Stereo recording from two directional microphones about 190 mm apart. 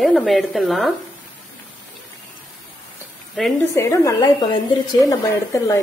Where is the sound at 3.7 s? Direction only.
15° left (ahead or behind).